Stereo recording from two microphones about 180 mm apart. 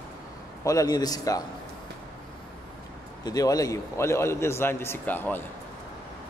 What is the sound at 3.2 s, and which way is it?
A man's voice, 20° left (ahead or behind).